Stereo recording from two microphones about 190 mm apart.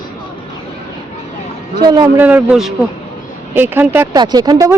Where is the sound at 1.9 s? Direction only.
20° right (ahead or behind).